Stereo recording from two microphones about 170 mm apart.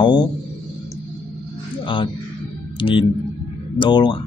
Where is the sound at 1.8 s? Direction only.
30° left (ahead or behind).